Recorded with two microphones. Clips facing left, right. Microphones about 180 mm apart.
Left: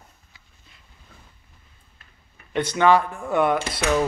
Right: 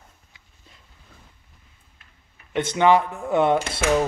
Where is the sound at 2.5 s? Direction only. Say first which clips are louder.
Even; 25° right (ahead or behind).